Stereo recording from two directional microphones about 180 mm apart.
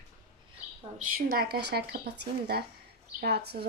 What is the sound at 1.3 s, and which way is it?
Speech, 60° right (ahead or behind).